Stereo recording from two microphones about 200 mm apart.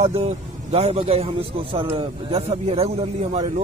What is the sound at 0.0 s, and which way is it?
A man's voice, 35° right (ahead or behind).